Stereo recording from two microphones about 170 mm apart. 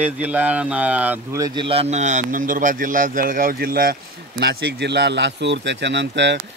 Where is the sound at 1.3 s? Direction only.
25° right (ahead or behind); by 3.9 s 60° right (ahead or behind).